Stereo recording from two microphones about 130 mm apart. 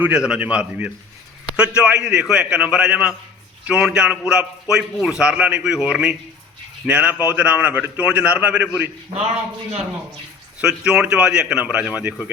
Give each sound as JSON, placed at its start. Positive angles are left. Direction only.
{"t": 0.0, "sound": "a man's voice", "side_deg": -5}
{"t": 9.0, "sound": "a man's voice", "side_deg": -55}
{"t": 10.6, "sound": "a man's voice", "side_deg": -5}